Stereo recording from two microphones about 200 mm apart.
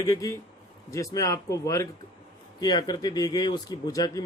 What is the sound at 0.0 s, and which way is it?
Speech, 15° left (ahead or behind).